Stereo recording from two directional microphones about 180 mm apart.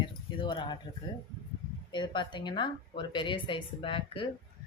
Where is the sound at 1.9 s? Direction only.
25° left (ahead or behind).